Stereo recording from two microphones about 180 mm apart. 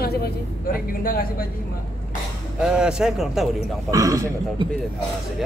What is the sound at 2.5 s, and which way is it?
Speech, 5° right (ahead or behind).